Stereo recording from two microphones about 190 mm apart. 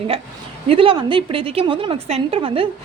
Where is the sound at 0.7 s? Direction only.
25° right (ahead or behind).